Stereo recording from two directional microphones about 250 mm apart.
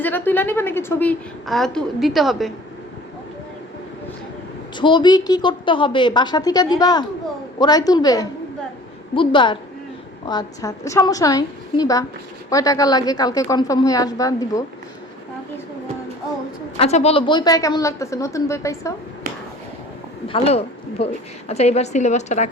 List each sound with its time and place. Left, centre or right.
0.0 s a woman's voice: centre
4.8 s a woman's voice: centre
16.7 s a woman's voice: left
20.2 s a woman's voice: left